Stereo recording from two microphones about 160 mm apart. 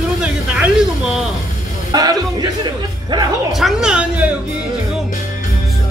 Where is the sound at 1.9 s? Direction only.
25° right (ahead or behind).